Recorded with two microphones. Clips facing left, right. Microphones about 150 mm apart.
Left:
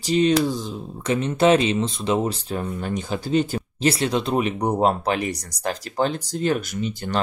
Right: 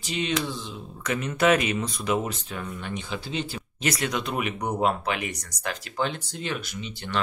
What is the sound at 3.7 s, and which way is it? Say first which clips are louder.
Speech: left 6 dB; 30° left (ahead or behind).